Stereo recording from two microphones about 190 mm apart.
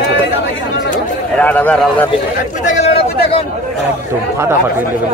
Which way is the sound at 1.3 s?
10° left (ahead or behind).